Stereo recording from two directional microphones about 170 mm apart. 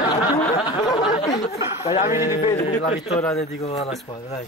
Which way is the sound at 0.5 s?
30° left (ahead or behind).